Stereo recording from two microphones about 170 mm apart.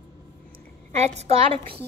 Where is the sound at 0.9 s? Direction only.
40° right (ahead or behind).